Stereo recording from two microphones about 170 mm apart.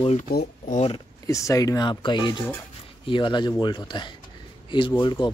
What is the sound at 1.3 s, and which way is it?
Speech, 20° left (ahead or behind).